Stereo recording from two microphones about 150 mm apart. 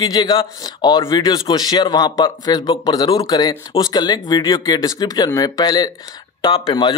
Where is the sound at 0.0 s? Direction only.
30° left (ahead or behind).